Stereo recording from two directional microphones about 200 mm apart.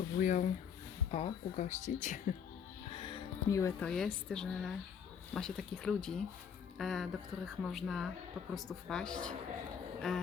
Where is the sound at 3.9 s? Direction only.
5° left (ahead or behind).